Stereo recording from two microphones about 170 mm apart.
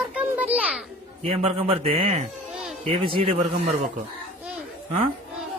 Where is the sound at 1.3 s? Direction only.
35° right (ahead or behind).